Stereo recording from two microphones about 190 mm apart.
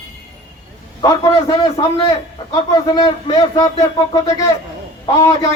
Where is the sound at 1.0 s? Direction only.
25° left (ahead or behind).